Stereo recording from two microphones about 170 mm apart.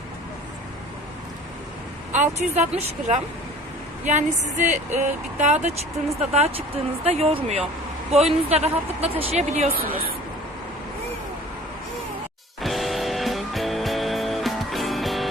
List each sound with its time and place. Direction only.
2.1 s speech: 45° right (ahead or behind)
12.6 s music: centre (ahead or behind)